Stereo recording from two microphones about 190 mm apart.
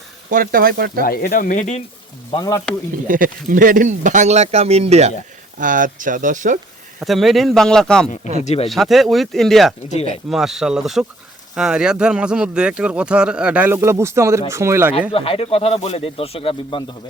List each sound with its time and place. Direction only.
0.3 s speech: 50° right (ahead or behind)
1.0 s speech: 50° left (ahead or behind)
2.3 s speech: 20° left (ahead or behind)
3.1 s speech: 45° right (ahead or behind)
7.0 s speech: centre (ahead or behind)
15.1 s speech: 30° left (ahead or behind)